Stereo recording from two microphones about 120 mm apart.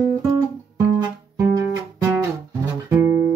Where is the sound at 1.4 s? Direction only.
25° right (ahead or behind).